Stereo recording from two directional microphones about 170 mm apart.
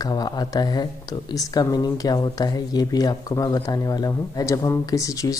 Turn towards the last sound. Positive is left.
turn(degrees=20)  # may be behind; listen again after turning